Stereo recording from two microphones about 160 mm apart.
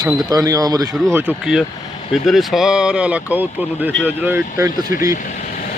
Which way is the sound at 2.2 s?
Centre (ahead or behind).